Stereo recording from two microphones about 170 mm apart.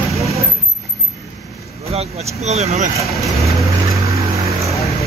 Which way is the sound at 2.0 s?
40° right (ahead or behind).